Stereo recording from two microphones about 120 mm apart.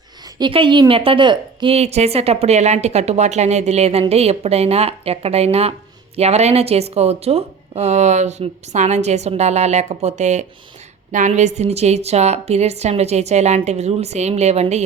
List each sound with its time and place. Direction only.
0.3 s a woman's voice: 40° right (ahead or behind)
1.7 s a woman's voice: 65° right (ahead or behind)
11.1 s a woman's voice: 85° right; by 14.8 s 65° right (ahead or behind)